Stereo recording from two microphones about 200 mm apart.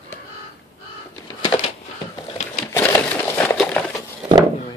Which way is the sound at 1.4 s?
20° left (ahead or behind).